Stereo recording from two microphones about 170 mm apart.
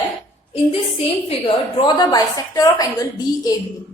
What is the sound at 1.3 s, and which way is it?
A woman's voice, 30° left (ahead or behind).